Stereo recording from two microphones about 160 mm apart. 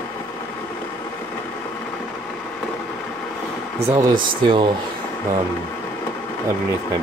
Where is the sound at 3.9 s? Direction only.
25° right (ahead or behind).